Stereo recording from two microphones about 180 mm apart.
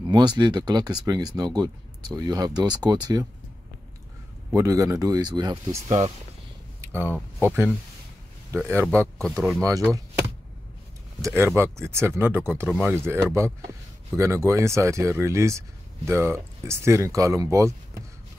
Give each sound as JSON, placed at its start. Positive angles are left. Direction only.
{"t": 0.0, "sound": "speech", "side_deg": -25}
{"t": 4.6, "sound": "speech", "side_deg": -15}
{"t": 5.9, "sound": "speech", "side_deg": -35}
{"t": 6.8, "sound": "speech", "side_deg": -10}
{"t": 9.2, "sound": "speech", "side_deg": 0}
{"t": 9.6, "sound": "speech", "side_deg": -20}
{"t": 11.1, "sound": "speech", "side_deg": -15}